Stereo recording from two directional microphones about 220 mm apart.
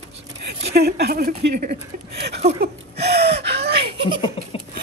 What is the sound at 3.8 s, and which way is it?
Giggle, 25° right (ahead or behind).